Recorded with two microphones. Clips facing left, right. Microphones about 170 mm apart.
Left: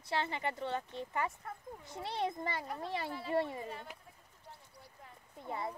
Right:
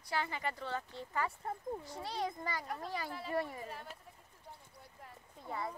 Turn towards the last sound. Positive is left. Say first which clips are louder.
# left 1 dB
turn(degrees=20)  # may be behind; listen again after turning